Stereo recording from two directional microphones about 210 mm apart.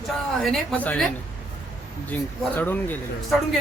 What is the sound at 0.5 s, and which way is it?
A woman's voice, 5° left (ahead or behind).